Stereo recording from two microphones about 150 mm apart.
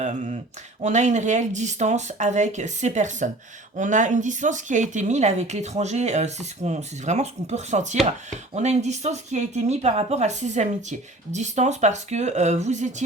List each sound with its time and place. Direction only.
0.0 s speech: 50° right (ahead or behind)